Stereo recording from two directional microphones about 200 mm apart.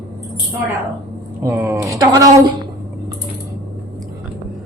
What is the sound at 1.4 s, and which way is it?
Speech, 15° right (ahead or behind).